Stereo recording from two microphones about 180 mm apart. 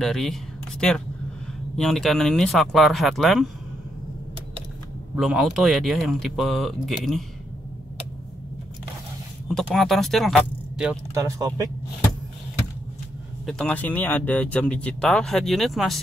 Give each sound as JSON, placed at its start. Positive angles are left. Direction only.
{"t": 0.0, "sound": "speech", "side_deg": 0}
{"t": 5.1, "sound": "speech", "side_deg": 0}
{"t": 9.5, "sound": "speech", "side_deg": 0}
{"t": 11.1, "sound": "speech", "side_deg": -15}
{"t": 13.5, "sound": "speech", "side_deg": 5}